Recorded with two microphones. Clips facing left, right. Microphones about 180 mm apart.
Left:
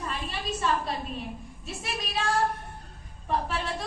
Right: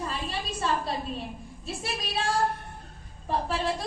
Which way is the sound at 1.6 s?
30° right (ahead or behind).